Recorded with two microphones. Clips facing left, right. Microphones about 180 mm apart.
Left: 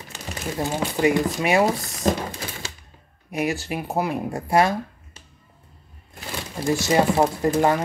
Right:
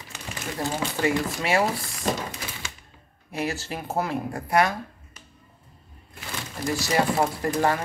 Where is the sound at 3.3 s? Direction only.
15° left (ahead or behind).